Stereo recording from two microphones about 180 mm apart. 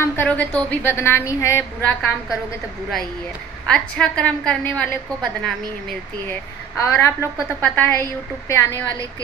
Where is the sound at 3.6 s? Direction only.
5° left (ahead or behind).